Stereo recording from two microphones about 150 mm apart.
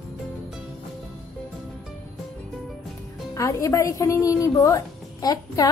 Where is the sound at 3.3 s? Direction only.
20° left (ahead or behind).